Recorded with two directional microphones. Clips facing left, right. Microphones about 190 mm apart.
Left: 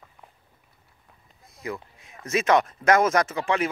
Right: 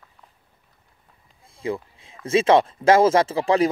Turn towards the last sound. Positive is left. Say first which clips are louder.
# right 6 dB
turn(degrees=-35)  # may be behind; listen again after turning